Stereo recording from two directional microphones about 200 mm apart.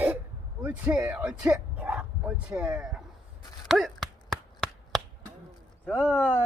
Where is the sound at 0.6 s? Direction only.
10° right (ahead or behind).